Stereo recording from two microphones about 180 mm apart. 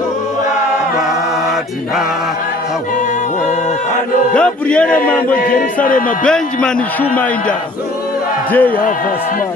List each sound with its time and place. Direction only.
4.3 s speech: 5° left (ahead or behind)
5.9 s music: 50° left (ahead or behind)
6.2 s a man's voice: 5° left (ahead or behind)